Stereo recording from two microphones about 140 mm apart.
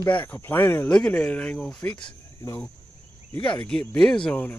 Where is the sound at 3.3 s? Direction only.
10° left (ahead or behind).